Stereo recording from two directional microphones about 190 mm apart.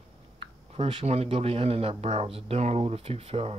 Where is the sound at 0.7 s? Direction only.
30° right (ahead or behind).